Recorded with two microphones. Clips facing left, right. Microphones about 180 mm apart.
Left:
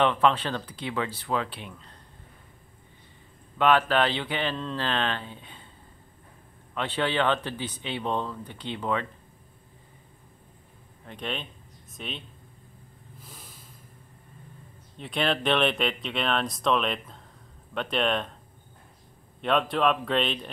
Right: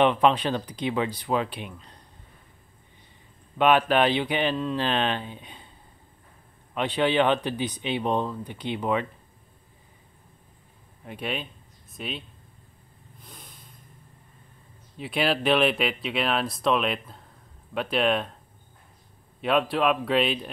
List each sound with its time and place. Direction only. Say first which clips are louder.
0.0 s speech: right 3 dB; 15° right (ahead or behind)
3.5 s speech: right 2 dB; 15° right (ahead or behind)
6.7 s speech: right 4 dB; 15° right (ahead or behind)
11.1 s speech: right 2 dB; 10° right (ahead or behind)
13.2 s a sound: right 1 dB; 5° left (ahead or behind)
15.0 s speech: right 2 dB; 5° right (ahead or behind)
19.4 s speech: right 1 dB; 5° right (ahead or behind)